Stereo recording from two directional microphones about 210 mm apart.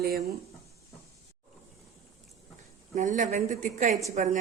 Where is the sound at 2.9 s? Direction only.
35° right (ahead or behind).